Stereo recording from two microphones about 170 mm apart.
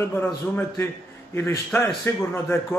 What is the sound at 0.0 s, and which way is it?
A man's voice, 10° left (ahead or behind).